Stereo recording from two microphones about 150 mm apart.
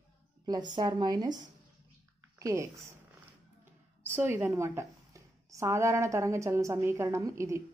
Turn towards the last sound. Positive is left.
turn(degrees=-20)  # may be behind; listen again after turning